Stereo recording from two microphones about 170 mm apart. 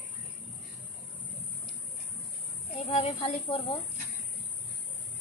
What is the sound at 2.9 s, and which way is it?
Speech, 35° left (ahead or behind).